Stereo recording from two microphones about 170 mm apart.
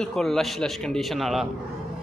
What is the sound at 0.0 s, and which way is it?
Speech, centre (ahead or behind).